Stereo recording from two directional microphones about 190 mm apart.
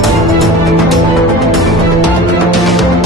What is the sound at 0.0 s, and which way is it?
Music, centre (ahead or behind).